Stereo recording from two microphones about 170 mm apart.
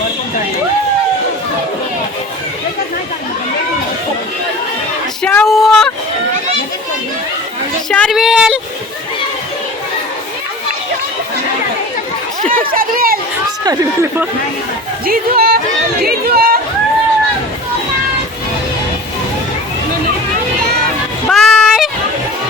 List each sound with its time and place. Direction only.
5.2 s female singing: 5° left (ahead or behind)
7.9 s a woman's voice: 5° left (ahead or behind)
12.4 s chatter: 55° right (ahead or behind)
13.7 s speech: 15° right (ahead or behind)
15.0 s speech: 60° right (ahead or behind)
21.2 s a sound: centre (ahead or behind)